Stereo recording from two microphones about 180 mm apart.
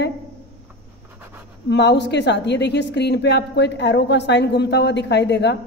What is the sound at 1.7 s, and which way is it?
A woman's voice, 70° left (ahead or behind).